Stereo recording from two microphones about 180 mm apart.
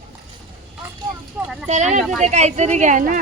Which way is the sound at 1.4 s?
5° right (ahead or behind).